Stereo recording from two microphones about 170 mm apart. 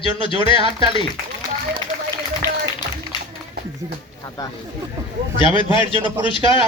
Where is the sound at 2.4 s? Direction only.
15° left (ahead or behind).